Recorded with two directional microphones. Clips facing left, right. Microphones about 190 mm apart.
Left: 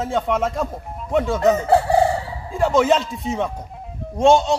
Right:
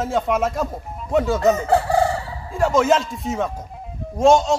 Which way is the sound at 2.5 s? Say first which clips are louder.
Even; centre (ahead or behind).